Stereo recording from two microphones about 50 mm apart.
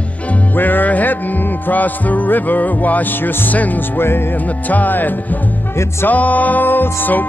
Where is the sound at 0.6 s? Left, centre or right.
Left.